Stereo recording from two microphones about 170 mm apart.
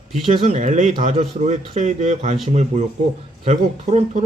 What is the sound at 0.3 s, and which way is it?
Speech, 40° right (ahead or behind).